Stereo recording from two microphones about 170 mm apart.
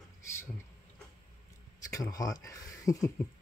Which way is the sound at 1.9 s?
20° left (ahead or behind).